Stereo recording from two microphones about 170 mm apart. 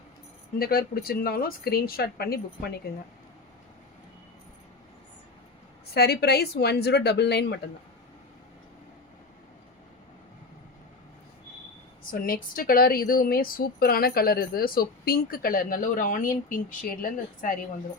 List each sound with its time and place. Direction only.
0.6 s speech: 60° left (ahead or behind)
5.9 s a woman's voice: 70° left (ahead or behind)
12.1 s speech: 55° left (ahead or behind)